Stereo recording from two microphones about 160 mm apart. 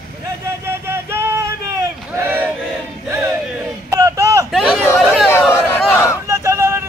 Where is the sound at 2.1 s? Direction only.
15° right (ahead or behind).